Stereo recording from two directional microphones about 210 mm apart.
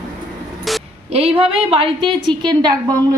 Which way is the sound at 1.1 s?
25° right (ahead or behind).